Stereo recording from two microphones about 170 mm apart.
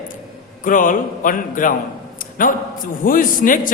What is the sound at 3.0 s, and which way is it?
Speech, 55° left (ahead or behind).